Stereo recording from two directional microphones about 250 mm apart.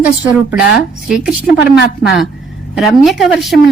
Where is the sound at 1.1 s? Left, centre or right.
Centre.